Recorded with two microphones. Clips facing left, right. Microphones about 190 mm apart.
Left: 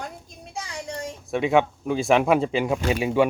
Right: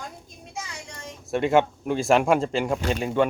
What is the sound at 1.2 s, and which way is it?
Speech, centre (ahead or behind).